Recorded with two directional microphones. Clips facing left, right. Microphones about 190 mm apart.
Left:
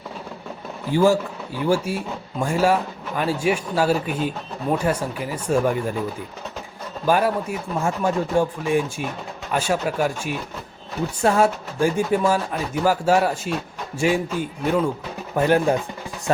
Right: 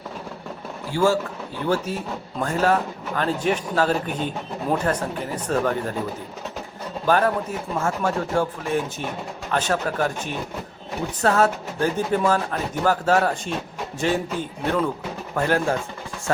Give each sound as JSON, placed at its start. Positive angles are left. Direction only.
{"t": 0.9, "sound": "speech", "side_deg": 15}
{"t": 7.1, "sound": "speech", "side_deg": 10}
{"t": 15.4, "sound": "speech", "side_deg": 15}